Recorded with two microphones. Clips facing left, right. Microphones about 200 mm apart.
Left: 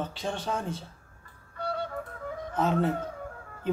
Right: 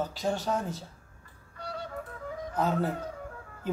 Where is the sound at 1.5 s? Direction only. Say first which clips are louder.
Left 6 dB; 60° left (ahead or behind).